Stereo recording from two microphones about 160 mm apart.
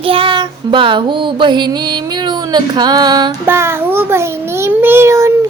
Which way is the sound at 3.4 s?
15° right (ahead or behind).